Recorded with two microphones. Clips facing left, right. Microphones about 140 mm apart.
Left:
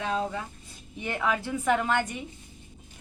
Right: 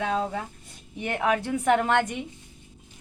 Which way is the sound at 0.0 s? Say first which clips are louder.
Right 2 dB; 60° right (ahead or behind).